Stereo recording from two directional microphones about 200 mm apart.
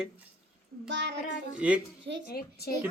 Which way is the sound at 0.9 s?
60° right (ahead or behind).